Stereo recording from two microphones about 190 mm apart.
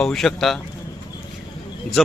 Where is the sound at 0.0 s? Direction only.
Centre (ahead or behind).